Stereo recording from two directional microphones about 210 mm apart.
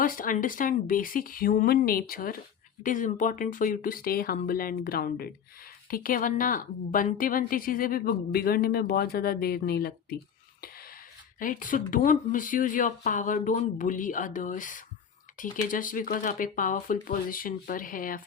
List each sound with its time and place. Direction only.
0.0 s a woman's voice: 40° left (ahead or behind)
11.3 s speech: 40° left (ahead or behind)